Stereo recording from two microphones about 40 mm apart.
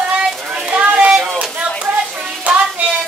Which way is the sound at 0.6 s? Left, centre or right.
Right.